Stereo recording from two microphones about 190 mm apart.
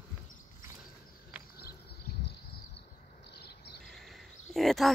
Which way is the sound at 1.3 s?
5° right (ahead or behind).